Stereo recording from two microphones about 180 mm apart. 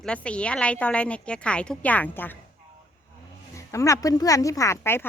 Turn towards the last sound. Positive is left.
turn(degrees=15)  # may be behind; listen again after turning